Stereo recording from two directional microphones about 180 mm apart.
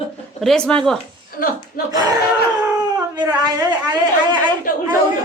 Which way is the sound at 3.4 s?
20° right (ahead or behind).